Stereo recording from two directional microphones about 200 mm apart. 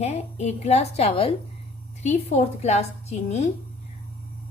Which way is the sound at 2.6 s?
30° left (ahead or behind).